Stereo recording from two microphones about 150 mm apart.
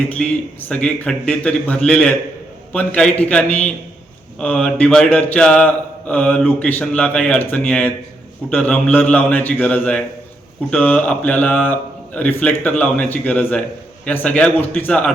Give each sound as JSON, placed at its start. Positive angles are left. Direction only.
{"t": 0.2, "sound": "a man's voice", "side_deg": 5}
{"t": 0.7, "sound": "mantra", "side_deg": 10}